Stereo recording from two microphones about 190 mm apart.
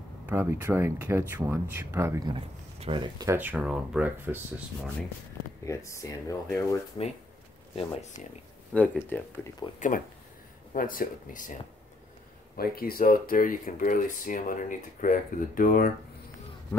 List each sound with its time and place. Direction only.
0.3 s speech: 10° right (ahead or behind)
3.3 s speech: 10° right (ahead or behind)
5.7 s speech: 15° left (ahead or behind)
7.7 s speech: 35° left (ahead or behind)
8.7 s speech: 10° left (ahead or behind)
9.8 s speech: 45° left (ahead or behind)
12.5 s speech: 50° left (ahead or behind)